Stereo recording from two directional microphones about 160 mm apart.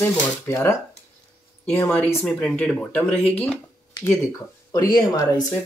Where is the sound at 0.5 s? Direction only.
15° left (ahead or behind).